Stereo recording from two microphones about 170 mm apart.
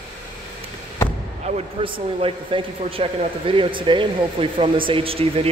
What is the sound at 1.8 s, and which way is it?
Speech, 30° right (ahead or behind).